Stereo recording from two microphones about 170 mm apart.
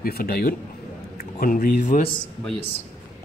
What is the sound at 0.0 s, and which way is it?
A man's voice, 65° left (ahead or behind).